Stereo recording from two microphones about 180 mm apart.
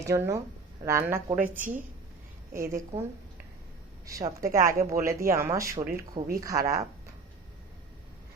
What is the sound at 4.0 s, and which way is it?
A woman's voice, 20° right (ahead or behind).